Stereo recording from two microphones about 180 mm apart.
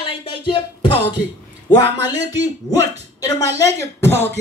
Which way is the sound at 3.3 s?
70° right (ahead or behind).